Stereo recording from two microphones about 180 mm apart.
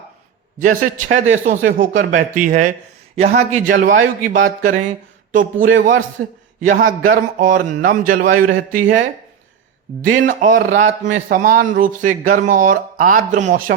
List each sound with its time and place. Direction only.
0.6 s speech: 50° right (ahead or behind)
10.1 s speech: 50° right (ahead or behind)